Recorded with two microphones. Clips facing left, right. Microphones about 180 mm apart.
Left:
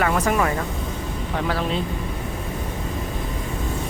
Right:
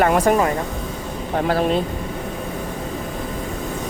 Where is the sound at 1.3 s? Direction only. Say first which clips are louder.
Right 6 dB; 45° right (ahead or behind).